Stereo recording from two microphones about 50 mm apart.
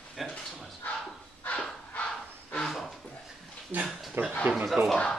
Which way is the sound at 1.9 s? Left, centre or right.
Left.